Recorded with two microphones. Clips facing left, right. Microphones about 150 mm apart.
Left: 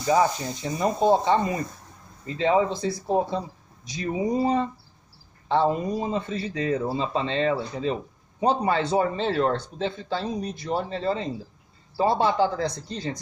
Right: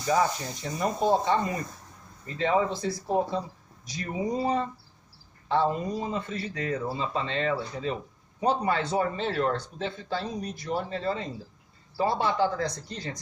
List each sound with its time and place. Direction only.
0.0 s speech: 25° left (ahead or behind)
3.8 s speech: 20° left (ahead or behind)